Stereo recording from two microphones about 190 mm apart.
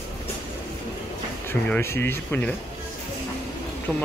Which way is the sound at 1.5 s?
10° left (ahead or behind).